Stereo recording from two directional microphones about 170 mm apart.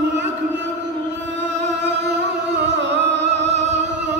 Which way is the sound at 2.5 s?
90° right.